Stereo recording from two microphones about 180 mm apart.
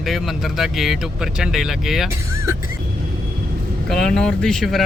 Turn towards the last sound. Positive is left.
turn(degrees=0)  # may be behind; listen again after turning